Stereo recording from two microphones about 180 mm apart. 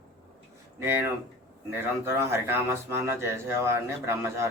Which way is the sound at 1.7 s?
15° right (ahead or behind).